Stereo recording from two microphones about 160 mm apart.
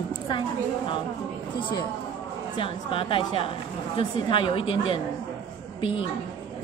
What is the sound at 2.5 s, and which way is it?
A woman's voice, 35° left (ahead or behind).